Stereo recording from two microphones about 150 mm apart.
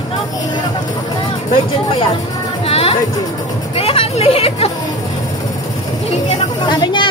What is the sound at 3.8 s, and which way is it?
Speech, 40° left (ahead or behind).